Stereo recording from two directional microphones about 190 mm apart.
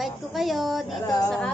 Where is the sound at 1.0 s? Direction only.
20° left (ahead or behind).